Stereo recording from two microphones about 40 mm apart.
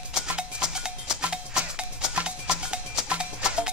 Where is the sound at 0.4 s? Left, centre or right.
Centre.